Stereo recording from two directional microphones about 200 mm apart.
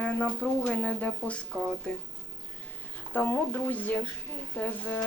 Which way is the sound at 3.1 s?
10° left (ahead or behind).